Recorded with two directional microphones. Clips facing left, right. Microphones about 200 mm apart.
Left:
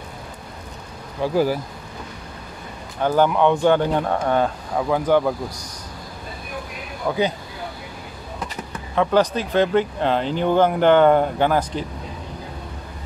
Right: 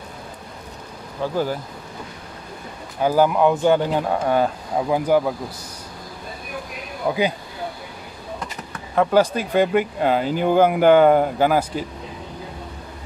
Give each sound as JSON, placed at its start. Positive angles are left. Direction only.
{"t": 1.3, "sound": "speech", "side_deg": 10}
{"t": 3.0, "sound": "speech", "side_deg": -5}
{"t": 7.0, "sound": "speech", "side_deg": -20}
{"t": 8.9, "sound": "speech", "side_deg": -5}